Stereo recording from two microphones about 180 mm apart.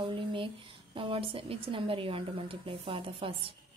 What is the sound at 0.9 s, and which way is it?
A woman's voice, 30° right (ahead or behind).